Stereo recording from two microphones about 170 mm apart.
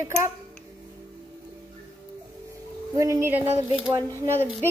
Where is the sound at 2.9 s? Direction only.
20° right (ahead or behind).